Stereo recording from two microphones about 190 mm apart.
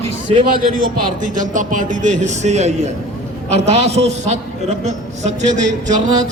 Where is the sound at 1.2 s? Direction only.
40° right (ahead or behind).